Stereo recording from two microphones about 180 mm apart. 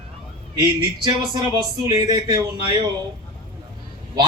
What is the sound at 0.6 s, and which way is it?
A man's voice, 25° right (ahead or behind).